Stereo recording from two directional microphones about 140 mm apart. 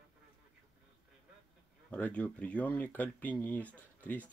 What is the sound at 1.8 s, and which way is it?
Speech, 10° left (ahead or behind).